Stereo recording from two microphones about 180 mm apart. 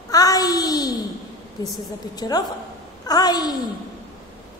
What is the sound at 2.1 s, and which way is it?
Music, 20° left (ahead or behind).